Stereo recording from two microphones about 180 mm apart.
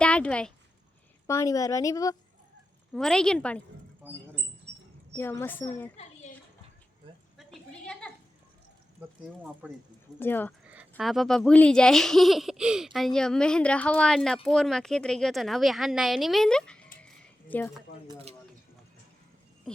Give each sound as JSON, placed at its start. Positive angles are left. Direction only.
{"t": 0.0, "sound": "speech", "side_deg": 5}
{"t": 1.3, "sound": "a woman's voice", "side_deg": 15}
{"t": 2.9, "sound": "speech", "side_deg": 5}
{"t": 5.1, "sound": "speech", "side_deg": 15}
{"t": 7.3, "sound": "a sound", "side_deg": 5}
{"t": 9.0, "sound": "speech", "side_deg": -10}
{"t": 10.2, "sound": "speech", "side_deg": 10}
{"t": 10.7, "sound": "speech", "side_deg": -5}
{"t": 18.1, "sound": "speech", "side_deg": -35}
{"t": 19.7, "sound": "a sound", "side_deg": 5}